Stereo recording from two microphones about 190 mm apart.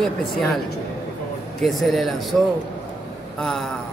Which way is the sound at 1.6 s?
Centre (ahead or behind).